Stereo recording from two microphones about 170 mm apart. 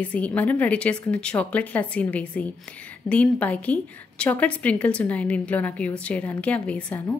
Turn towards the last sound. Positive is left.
turn(degrees=10)  # may be behind; listen again after turning